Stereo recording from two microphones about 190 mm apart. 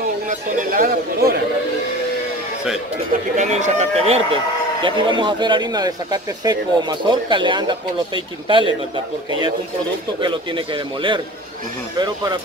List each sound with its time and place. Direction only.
0.3 s speech: 45° right (ahead or behind)
3.3 s a man's voice: 40° right (ahead or behind)
10.2 s a man's voice: 25° right (ahead or behind)